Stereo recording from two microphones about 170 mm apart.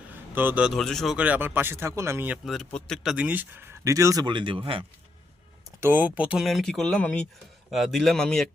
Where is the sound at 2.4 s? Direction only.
Centre (ahead or behind).